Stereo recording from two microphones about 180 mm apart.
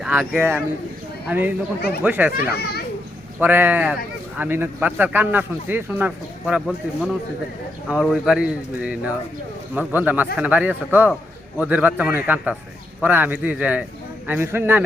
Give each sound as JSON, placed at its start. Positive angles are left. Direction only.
{"t": 0.0, "sound": "a man's voice", "side_deg": -10}
{"t": 2.3, "sound": "a child's voice", "side_deg": 65}
{"t": 3.4, "sound": "a man's voice", "side_deg": -10}